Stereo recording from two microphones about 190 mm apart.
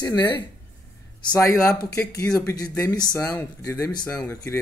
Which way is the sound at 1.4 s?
15° left (ahead or behind).